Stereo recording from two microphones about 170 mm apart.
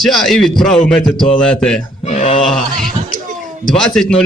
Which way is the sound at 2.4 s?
Centre (ahead or behind).